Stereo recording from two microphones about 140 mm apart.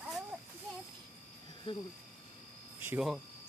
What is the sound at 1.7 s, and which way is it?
Cricket, 35° left (ahead or behind).